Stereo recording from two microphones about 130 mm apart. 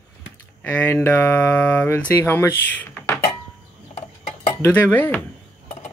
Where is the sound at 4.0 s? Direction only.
60° left (ahead or behind).